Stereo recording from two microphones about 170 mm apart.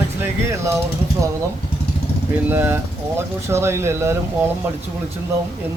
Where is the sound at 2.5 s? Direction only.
15° right (ahead or behind).